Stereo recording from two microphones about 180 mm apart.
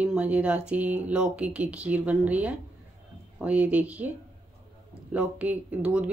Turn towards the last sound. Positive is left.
turn(degrees=-5)  # may be behind; listen again after turning